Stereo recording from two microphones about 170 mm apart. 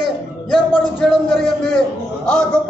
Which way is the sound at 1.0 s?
Centre (ahead or behind).